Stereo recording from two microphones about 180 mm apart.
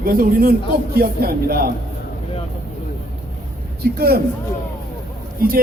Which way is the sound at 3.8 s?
60° right (ahead or behind).